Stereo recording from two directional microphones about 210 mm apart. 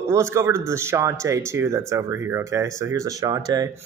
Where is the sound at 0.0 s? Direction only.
15° right (ahead or behind).